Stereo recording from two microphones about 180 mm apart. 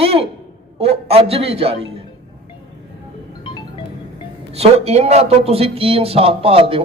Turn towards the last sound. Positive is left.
turn(degrees=-30)  # may be behind; listen again after turning